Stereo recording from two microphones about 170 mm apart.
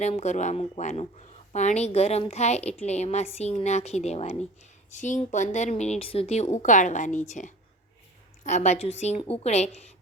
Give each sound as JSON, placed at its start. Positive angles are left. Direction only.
{"t": 0.0, "sound": "a woman's voice", "side_deg": 40}